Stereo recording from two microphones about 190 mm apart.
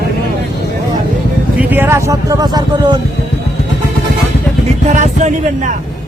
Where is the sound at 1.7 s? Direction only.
15° right (ahead or behind).